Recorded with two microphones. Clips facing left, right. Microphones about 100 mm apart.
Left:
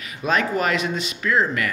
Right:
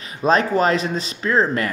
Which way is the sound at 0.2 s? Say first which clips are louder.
Right 5 dB; 35° right (ahead or behind).